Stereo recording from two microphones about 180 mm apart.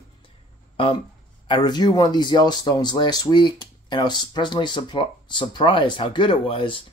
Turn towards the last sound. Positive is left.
turn(degrees=30)  # may be behind; listen again after turning